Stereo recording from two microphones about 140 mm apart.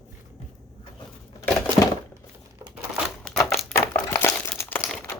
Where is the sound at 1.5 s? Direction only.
20° left (ahead or behind).